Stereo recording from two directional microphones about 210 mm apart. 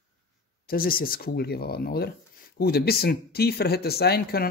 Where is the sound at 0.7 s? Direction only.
45° left (ahead or behind).